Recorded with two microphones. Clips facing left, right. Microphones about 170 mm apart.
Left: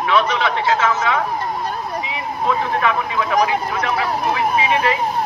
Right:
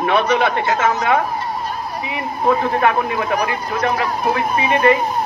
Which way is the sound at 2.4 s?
55° right (ahead or behind).